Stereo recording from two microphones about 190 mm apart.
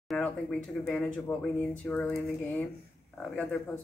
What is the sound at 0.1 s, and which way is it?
Speech, 5° left (ahead or behind).